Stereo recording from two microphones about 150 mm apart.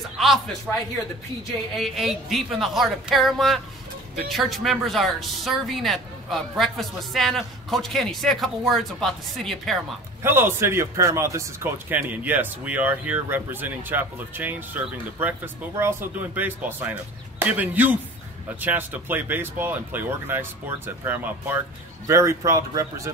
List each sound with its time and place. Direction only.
0.2 s speech: centre (ahead or behind)
1.8 s speech: centre (ahead or behind)
10.2 s a man's voice: 15° right (ahead or behind)